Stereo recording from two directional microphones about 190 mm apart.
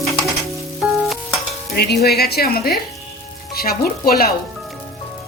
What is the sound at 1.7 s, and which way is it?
Stir, 55° left (ahead or behind).